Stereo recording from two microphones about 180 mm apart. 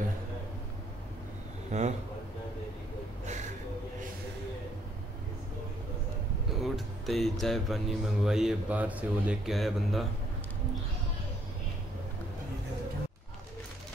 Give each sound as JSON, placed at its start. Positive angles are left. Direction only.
{"t": 1.7, "sound": "a man's voice", "side_deg": -40}
{"t": 6.6, "sound": "speech", "side_deg": 0}